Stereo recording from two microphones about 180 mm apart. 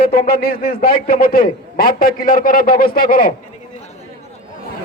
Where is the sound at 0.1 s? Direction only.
55° left (ahead or behind).